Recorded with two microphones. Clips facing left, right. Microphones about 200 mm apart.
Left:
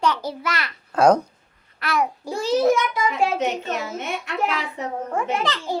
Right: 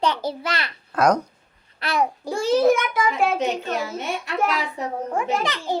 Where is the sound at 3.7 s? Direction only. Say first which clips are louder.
Right 1 dB; 35° right (ahead or behind).